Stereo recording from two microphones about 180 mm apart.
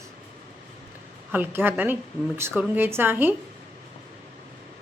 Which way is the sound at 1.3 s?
10° right (ahead or behind).